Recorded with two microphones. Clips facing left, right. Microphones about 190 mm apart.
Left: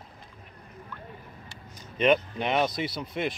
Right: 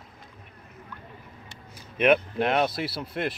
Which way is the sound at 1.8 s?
5° right (ahead or behind).